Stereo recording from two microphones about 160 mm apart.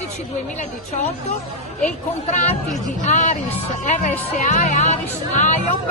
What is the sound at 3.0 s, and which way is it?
Speech, 50° left (ahead or behind).